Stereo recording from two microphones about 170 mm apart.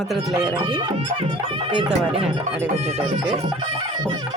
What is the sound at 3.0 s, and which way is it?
Speech, 5° right (ahead or behind).